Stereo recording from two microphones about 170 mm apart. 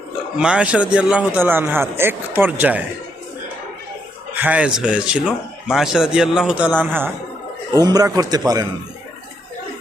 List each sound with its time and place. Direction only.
0.3 s a man's voice: 5° right (ahead or behind)
4.4 s speech: 10° right (ahead or behind)
7.7 s speech: 20° right (ahead or behind)